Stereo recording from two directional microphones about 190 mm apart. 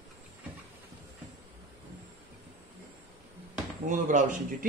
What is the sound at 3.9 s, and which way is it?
Speech, 40° right (ahead or behind).